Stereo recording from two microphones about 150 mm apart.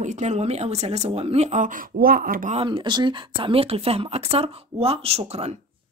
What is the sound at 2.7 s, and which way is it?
Speech, 30° right (ahead or behind).